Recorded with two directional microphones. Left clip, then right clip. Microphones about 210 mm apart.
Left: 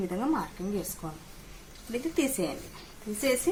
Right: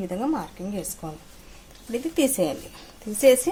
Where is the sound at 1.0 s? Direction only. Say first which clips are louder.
Right 4 dB; 35° right (ahead or behind).